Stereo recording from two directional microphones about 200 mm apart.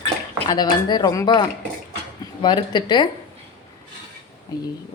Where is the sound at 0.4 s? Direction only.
20° left (ahead or behind).